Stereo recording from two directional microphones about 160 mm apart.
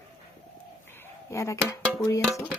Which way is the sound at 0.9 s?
15° left (ahead or behind).